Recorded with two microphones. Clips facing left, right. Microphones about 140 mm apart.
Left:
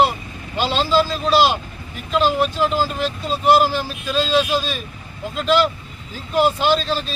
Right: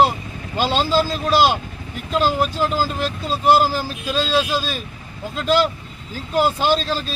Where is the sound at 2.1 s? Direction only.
40° right (ahead or behind).